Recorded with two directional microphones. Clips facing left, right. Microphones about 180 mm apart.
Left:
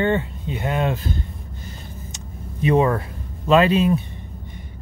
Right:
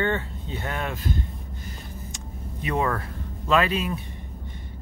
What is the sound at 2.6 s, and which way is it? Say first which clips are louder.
Speech: left 8 dB; 20° left (ahead or behind).